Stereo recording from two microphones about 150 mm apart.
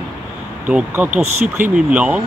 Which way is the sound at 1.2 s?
50° right (ahead or behind).